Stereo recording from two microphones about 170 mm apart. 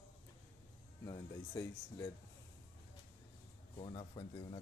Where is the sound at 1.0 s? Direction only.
20° left (ahead or behind).